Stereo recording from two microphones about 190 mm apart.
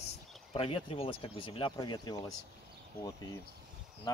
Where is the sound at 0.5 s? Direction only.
30° left (ahead or behind).